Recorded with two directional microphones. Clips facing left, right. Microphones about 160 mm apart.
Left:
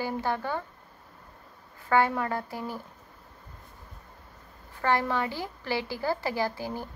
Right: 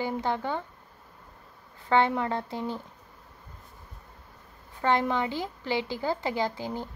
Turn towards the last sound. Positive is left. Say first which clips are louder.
# even
turn(degrees=-20)  # may be behind; listen again after turning